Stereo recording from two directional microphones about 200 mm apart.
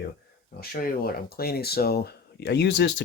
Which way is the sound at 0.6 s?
45° left (ahead or behind).